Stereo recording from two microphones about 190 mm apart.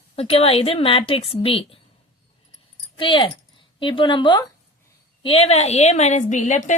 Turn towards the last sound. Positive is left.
turn(degrees=40)  # may be behind; listen again after turning